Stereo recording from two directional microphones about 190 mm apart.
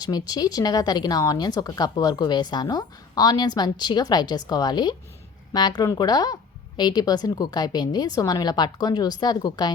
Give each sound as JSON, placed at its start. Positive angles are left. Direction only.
{"t": 0.0, "sound": "speech", "side_deg": 20}